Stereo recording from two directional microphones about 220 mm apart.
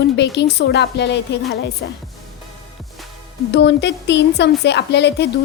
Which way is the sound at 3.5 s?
50° left (ahead or behind).